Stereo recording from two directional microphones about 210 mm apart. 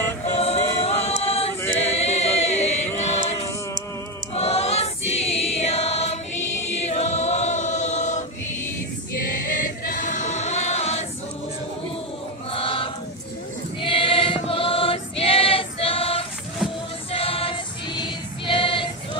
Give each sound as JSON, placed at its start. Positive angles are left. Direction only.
{"t": 0.4, "sound": "a capella", "side_deg": 30}
{"t": 1.8, "sound": "choir", "side_deg": 30}
{"t": 4.3, "sound": "choir", "side_deg": 30}
{"t": 9.5, "sound": "choir", "side_deg": 40}
{"t": 12.5, "sound": "choir", "side_deg": 25}
{"t": 17.1, "sound": "female singing", "side_deg": 25}